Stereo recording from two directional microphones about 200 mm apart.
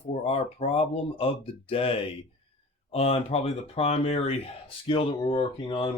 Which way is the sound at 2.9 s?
30° left (ahead or behind).